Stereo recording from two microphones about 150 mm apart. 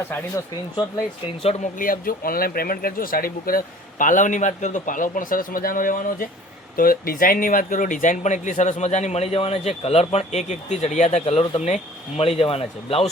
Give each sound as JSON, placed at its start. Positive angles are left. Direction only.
{"t": 1.4, "sound": "speech", "side_deg": 45}
{"t": 1.8, "sound": "speech", "side_deg": 70}